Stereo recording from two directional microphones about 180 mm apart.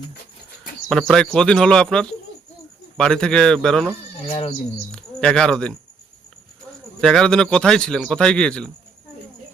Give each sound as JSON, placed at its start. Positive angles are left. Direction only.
{"t": 0.9, "sound": "a man's voice", "side_deg": 0}
{"t": 4.3, "sound": "speech", "side_deg": 35}
{"t": 4.9, "sound": "speech", "side_deg": 5}
{"t": 7.0, "sound": "a man's voice", "side_deg": 5}